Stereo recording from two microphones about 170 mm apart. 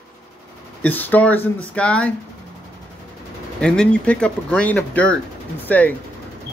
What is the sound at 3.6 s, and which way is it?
Speech, 5° left (ahead or behind).